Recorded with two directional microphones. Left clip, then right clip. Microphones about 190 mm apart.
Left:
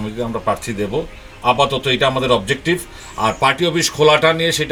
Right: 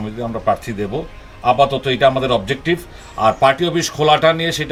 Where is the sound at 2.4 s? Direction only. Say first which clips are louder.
Left 1 dB; 30° right (ahead or behind).